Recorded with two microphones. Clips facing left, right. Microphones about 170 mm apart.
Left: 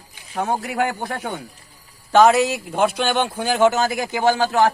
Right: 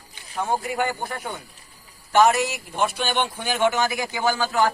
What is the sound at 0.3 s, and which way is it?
Speech, 75° left (ahead or behind).